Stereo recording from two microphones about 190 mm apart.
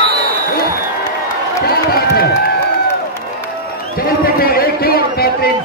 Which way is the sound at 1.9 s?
55° left (ahead or behind).